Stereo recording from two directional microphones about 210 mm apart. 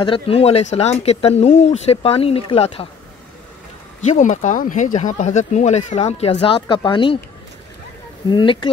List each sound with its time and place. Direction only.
0.0 s speech: 25° left (ahead or behind)
4.0 s speech: 35° left (ahead or behind)
8.3 s speech: 25° left (ahead or behind)